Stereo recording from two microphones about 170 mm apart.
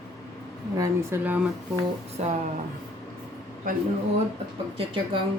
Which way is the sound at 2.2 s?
40° right (ahead or behind).